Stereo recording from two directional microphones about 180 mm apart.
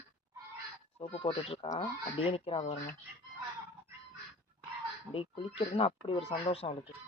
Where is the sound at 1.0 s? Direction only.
30° left (ahead or behind).